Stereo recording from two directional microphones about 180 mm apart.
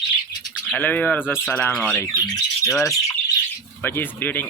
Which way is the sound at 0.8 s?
10° left (ahead or behind).